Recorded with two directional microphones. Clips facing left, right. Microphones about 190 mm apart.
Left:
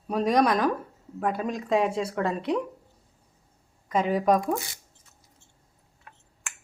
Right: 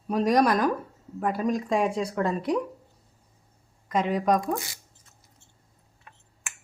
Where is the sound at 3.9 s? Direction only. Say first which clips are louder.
Left 1 dB; centre (ahead or behind).